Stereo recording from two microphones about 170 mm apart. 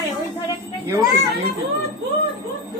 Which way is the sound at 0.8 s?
15° right (ahead or behind).